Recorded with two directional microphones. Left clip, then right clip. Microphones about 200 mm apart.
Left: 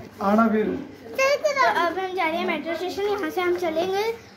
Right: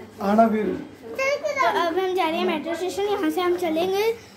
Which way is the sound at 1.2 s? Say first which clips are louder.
Left 3 dB; 30° left (ahead or behind).